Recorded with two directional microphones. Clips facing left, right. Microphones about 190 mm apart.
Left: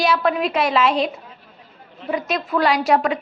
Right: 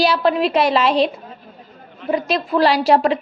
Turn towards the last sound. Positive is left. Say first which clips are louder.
# right 3 dB
turn(degrees=-30)  # may be behind; listen again after turning